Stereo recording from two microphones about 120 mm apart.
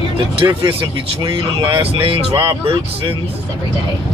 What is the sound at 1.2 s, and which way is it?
Speech, 45° right (ahead or behind).